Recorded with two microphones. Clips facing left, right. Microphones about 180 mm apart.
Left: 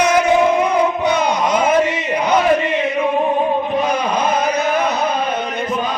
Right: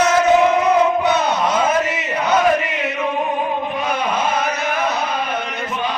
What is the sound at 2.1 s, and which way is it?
Chant, 10° left (ahead or behind).